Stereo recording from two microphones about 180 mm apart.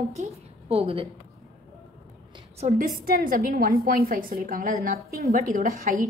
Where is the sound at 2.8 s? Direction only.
55° right (ahead or behind).